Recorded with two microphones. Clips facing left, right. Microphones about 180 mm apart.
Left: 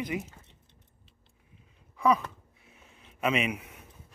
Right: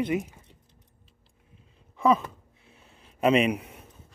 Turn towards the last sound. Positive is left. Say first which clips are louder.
# right 7 dB
turn(degrees=-35)  # may be behind; listen again after turning